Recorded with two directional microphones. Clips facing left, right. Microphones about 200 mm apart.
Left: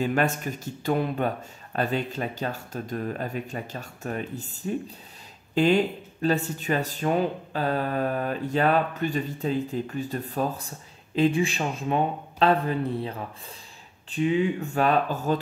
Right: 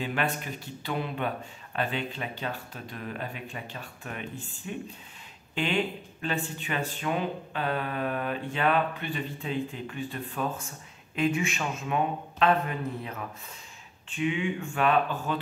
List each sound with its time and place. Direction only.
0.0 s speech: 45° left (ahead or behind)